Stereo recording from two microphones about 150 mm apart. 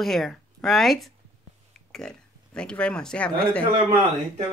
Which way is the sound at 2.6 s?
5° left (ahead or behind).